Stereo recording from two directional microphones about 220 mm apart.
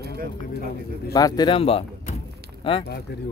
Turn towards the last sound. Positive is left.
turn(degrees=45)  # may be behind; listen again after turning